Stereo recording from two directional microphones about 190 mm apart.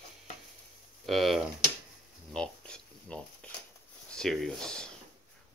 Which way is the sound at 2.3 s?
5° left (ahead or behind).